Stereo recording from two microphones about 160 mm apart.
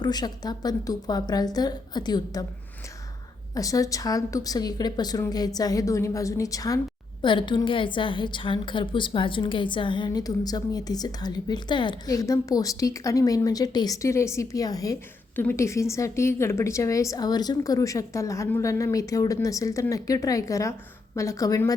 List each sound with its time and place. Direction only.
0.0 s a woman's voice: 25° left (ahead or behind)
3.5 s a woman's voice: 20° left (ahead or behind)